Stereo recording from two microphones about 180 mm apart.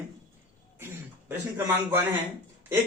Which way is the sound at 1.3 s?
10° right (ahead or behind).